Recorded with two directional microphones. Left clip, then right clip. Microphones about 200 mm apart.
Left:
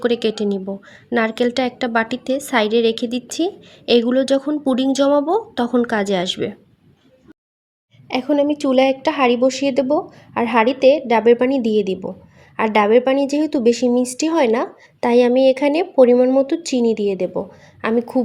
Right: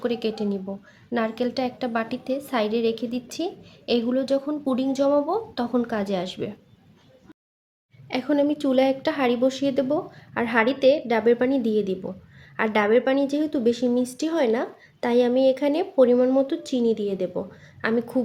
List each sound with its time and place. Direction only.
0.0 s a woman's voice: 40° left (ahead or behind)
8.0 s a woman's voice: 20° left (ahead or behind)